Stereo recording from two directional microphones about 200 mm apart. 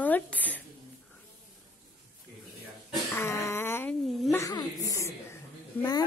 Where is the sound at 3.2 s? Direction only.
15° left (ahead or behind).